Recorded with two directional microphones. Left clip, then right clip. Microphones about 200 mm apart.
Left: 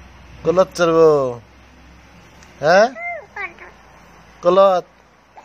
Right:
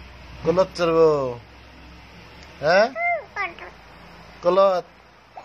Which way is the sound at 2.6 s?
30° left (ahead or behind).